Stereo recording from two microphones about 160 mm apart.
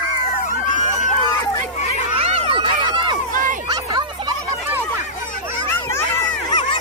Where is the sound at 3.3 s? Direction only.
55° right (ahead or behind).